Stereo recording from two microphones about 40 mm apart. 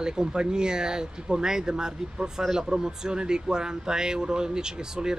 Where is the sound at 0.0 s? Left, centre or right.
Centre.